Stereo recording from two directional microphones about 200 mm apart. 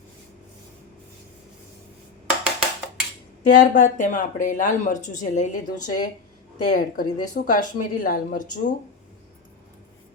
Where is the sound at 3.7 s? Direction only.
40° left (ahead or behind).